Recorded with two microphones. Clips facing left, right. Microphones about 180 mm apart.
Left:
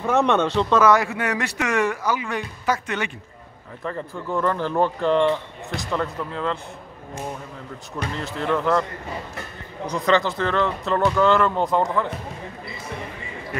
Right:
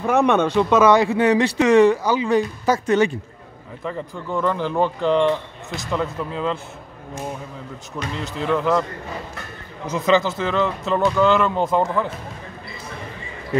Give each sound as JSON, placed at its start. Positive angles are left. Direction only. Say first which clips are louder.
{"t": 0.0, "sound": "speech", "louder": "right 2 dB", "side_deg": -15}
{"t": 3.8, "sound": "speech", "louder": "right 1 dB", "side_deg": 0}
{"t": 8.2, "sound": "speech", "louder": "right 2 dB", "side_deg": 0}
{"t": 9.8, "sound": "speech", "louder": "right 2 dB", "side_deg": -5}